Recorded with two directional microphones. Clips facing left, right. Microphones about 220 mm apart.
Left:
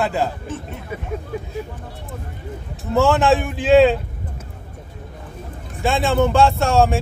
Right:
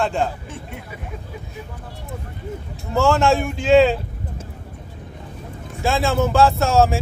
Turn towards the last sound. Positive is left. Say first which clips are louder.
# even
turn(degrees=0)  # may be behind; listen again after turning